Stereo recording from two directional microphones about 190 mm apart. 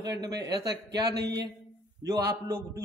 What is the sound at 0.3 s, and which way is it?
A man's voice, 65° right (ahead or behind).